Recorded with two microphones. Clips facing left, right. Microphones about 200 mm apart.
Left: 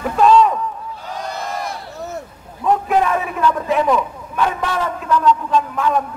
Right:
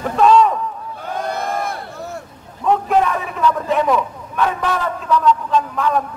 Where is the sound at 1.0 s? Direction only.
55° right (ahead or behind).